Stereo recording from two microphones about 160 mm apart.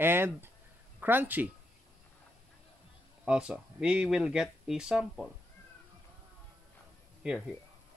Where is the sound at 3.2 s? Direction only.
5° right (ahead or behind).